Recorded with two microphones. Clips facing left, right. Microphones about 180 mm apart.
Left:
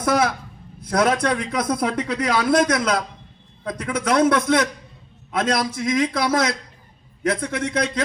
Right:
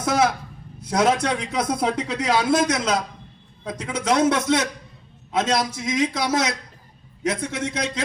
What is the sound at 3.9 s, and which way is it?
Speech, 25° right (ahead or behind).